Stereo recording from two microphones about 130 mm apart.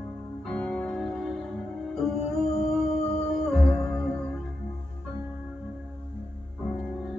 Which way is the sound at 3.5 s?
5° left (ahead or behind).